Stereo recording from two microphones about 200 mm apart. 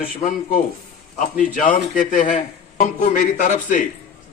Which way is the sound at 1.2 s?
40° left (ahead or behind).